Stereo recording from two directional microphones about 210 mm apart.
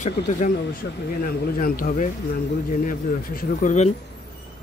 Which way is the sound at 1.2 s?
40° left (ahead or behind).